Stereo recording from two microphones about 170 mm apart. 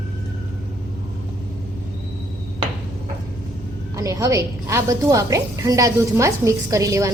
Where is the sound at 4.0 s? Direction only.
20° right (ahead or behind).